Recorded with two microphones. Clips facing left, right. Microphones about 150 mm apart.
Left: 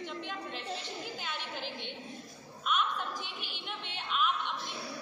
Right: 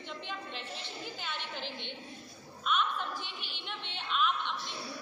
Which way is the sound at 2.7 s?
5° left (ahead or behind).